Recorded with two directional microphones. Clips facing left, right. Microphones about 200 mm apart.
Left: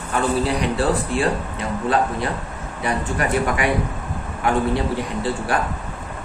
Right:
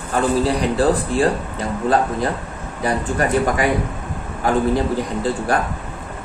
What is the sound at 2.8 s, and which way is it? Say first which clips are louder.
A man's voice: right 3 dB; 35° right (ahead or behind).